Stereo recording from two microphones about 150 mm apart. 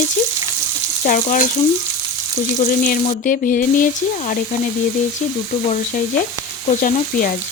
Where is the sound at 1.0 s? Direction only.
60° left (ahead or behind).